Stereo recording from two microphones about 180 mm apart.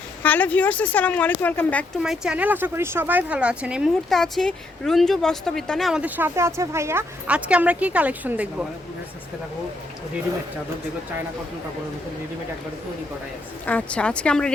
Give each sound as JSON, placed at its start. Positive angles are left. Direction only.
{"t": 0.2, "sound": "speech", "side_deg": 10}
{"t": 2.0, "sound": "speech", "side_deg": -5}
{"t": 13.7, "sound": "speech", "side_deg": 5}